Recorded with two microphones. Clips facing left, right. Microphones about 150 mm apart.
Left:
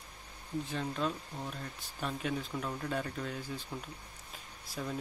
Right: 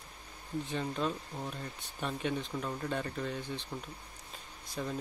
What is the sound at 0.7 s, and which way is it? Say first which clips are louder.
Speech: right 1 dB; centre (ahead or behind).